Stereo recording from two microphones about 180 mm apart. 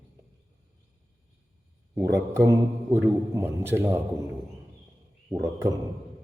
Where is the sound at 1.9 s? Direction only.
15° right (ahead or behind).